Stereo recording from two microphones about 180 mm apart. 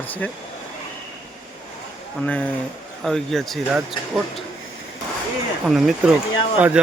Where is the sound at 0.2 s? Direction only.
10° left (ahead or behind).